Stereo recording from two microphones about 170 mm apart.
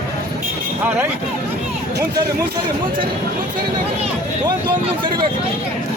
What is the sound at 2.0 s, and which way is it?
Speech, 70° right (ahead or behind).